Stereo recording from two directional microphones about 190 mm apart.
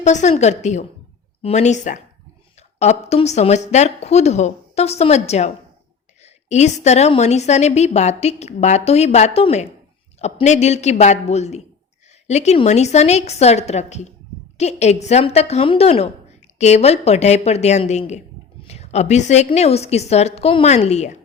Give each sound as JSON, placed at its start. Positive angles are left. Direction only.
{"t": 0.0, "sound": "a woman's voice", "side_deg": 40}